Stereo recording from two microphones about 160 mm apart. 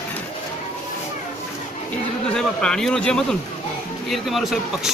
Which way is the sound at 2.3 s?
5° left (ahead or behind).